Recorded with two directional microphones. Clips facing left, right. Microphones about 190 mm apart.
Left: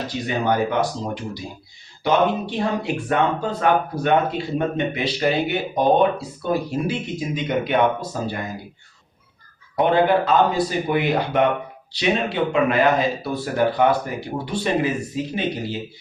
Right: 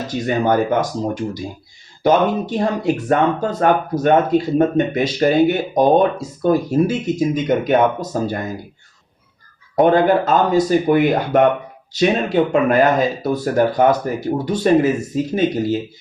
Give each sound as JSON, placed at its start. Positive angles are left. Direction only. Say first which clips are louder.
{"t": 0.3, "sound": "speech", "louder": "right 5 dB", "side_deg": -45}
{"t": 9.7, "sound": "speech", "louder": "right 4 dB", "side_deg": -45}